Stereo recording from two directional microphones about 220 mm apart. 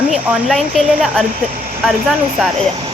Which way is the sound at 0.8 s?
Centre (ahead or behind).